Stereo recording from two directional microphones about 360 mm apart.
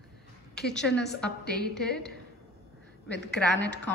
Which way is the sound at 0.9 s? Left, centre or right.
Left.